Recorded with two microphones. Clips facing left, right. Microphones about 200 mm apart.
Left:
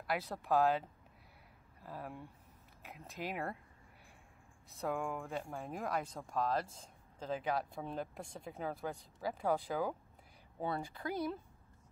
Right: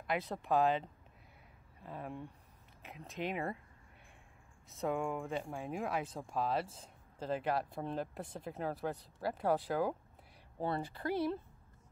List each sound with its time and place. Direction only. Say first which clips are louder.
0.2 s speech: right 2 dB; 20° right (ahead or behind)
0.5 s speech: even; 5° left (ahead or behind)
4.6 s speech: right 2 dB; centre (ahead or behind)